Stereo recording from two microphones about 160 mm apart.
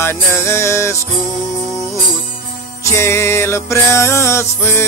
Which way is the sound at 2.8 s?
15° left (ahead or behind).